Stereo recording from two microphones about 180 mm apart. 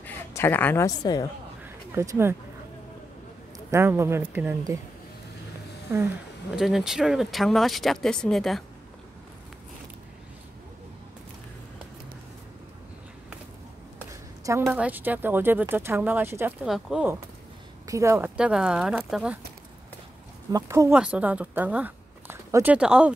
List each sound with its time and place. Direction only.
0.0 s a woman's voice: 10° left (ahead or behind)
2.0 s speech: 15° right (ahead or behind)
3.5 s speech: 15° right (ahead or behind)
5.9 s speech: 15° right (ahead or behind)
6.5 s speech: 5° right (ahead or behind)
13.9 s a sound: 15° right (ahead or behind)
14.6 s speech: 5° right (ahead or behind)
17.8 s speech: 15° right (ahead or behind)
20.5 s speech: 15° right (ahead or behind)